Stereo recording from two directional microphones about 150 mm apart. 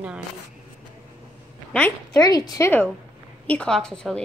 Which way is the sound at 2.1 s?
25° left (ahead or behind).